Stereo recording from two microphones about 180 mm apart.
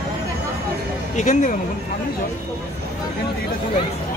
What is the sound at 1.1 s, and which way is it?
Speech, 45° left (ahead or behind).